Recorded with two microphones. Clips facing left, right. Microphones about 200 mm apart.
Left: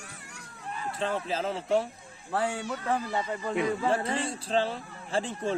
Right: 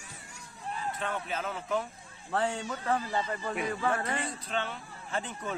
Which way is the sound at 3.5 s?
25° left (ahead or behind).